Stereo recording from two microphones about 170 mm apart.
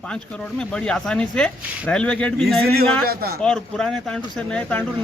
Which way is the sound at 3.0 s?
65° right (ahead or behind).